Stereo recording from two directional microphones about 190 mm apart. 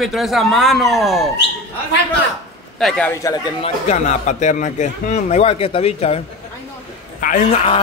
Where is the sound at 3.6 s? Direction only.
35° left (ahead or behind).